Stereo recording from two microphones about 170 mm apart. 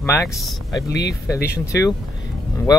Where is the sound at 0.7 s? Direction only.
20° left (ahead or behind).